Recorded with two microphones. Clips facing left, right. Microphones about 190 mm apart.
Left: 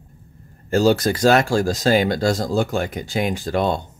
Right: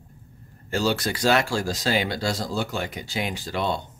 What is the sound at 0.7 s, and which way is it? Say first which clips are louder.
Speech: left 8 dB; 45° left (ahead or behind).